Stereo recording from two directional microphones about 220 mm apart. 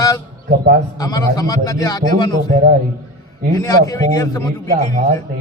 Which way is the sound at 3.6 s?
15° left (ahead or behind).